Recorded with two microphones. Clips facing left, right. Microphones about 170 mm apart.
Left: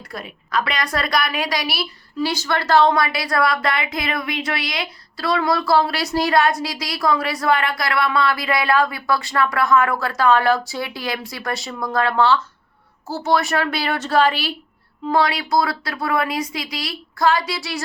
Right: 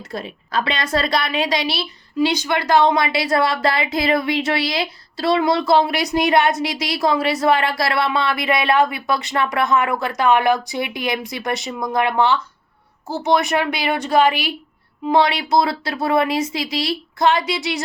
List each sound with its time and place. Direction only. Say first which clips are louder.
0.0 s a woman's voice: right 4 dB; 25° right (ahead or behind)